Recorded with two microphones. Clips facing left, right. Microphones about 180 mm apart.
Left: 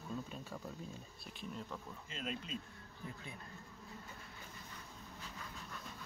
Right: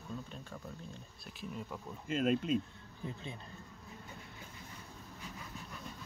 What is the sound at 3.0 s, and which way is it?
Speech, 25° right (ahead or behind).